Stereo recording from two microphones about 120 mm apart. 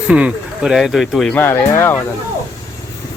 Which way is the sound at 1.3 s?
20° left (ahead or behind).